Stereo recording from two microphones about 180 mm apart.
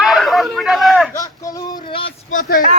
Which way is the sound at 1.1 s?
20° left (ahead or behind).